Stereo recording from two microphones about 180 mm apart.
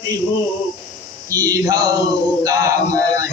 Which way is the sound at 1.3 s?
20° right (ahead or behind).